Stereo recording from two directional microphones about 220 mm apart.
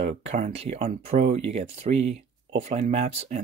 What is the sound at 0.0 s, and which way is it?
Speech, 30° right (ahead or behind).